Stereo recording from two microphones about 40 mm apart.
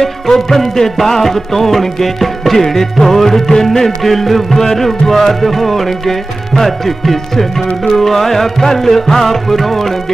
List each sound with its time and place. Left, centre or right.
0.0 s music: centre